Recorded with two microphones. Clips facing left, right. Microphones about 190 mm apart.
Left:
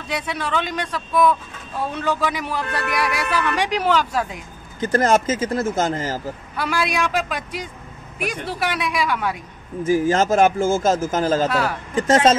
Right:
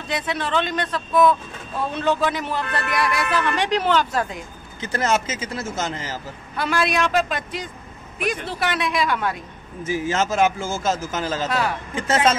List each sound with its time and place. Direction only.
0.1 s a man's voice: 10° left (ahead or behind)
4.7 s speech: 45° left (ahead or behind)
6.5 s a man's voice: 5° left (ahead or behind)
9.8 s speech: 45° left (ahead or behind)
11.4 s speech: 5° left (ahead or behind)
11.9 s speech: 40° left (ahead or behind)